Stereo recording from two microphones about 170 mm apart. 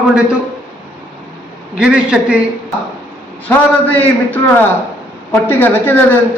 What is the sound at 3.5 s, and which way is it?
Speech, 10° left (ahead or behind).